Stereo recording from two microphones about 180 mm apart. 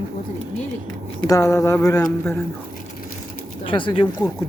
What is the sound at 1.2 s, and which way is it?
Speech, 20° left (ahead or behind).